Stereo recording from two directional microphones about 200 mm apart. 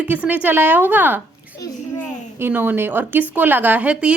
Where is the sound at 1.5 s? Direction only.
15° left (ahead or behind).